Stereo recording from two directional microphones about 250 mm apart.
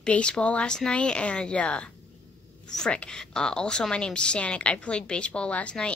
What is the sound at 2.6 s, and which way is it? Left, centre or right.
A woman's voice, centre.